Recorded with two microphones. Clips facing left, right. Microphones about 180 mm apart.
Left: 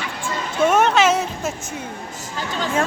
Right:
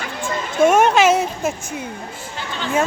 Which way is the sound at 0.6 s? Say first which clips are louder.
Right 2 dB; 10° right (ahead or behind).